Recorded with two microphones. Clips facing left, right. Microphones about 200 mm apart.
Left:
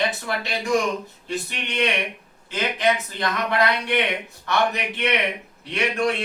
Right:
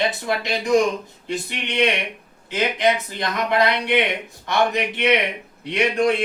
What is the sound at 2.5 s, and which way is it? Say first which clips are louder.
Speech: right 2 dB; 15° right (ahead or behind).